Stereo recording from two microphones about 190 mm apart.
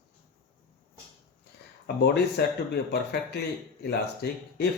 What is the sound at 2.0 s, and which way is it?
Speech, 60° left (ahead or behind).